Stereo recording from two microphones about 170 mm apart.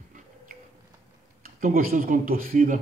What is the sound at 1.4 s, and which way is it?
Speech, 55° right (ahead or behind).